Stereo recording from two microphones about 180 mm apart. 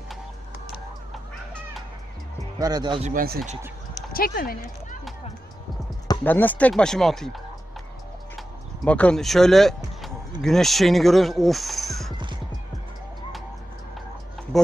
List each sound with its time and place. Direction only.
2.6 s speech: 25° right (ahead or behind)
3.0 s speech: 45° right (ahead or behind)
4.1 s speech: 55° left (ahead or behind)
6.2 s speech: 10° left (ahead or behind)
8.4 s speech: 5° left (ahead or behind)
14.5 s speech: centre (ahead or behind)